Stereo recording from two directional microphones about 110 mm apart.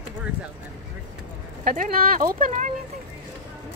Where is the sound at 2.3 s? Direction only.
90° right.